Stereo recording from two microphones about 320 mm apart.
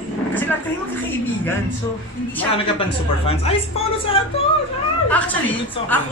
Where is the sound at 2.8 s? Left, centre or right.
Centre.